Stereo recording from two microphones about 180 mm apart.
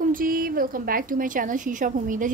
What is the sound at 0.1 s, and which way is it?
A woman's voice, 50° right (ahead or behind).